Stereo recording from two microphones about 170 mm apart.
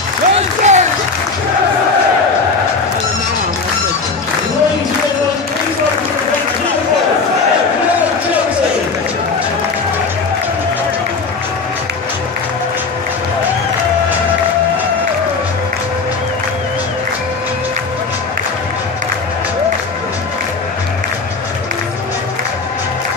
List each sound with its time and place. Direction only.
0.3 s applause: 40° right (ahead or behind)